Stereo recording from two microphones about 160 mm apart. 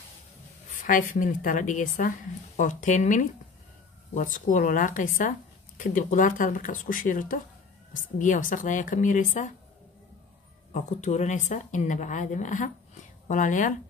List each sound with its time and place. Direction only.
0.7 s a woman's voice: 55° left (ahead or behind)
10.7 s speech: 45° left (ahead or behind)